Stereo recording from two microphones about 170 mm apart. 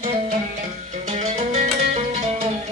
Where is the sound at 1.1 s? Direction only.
45° right (ahead or behind).